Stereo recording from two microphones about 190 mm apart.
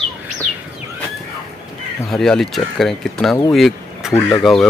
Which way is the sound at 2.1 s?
Centre (ahead or behind).